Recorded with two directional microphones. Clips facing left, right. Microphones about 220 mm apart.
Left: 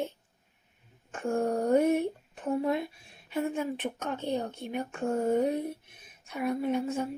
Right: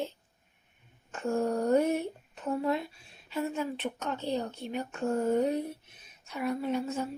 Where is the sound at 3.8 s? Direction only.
10° left (ahead or behind).